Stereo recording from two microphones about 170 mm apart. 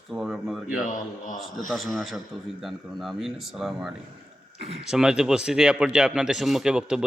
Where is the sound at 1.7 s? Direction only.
Centre (ahead or behind).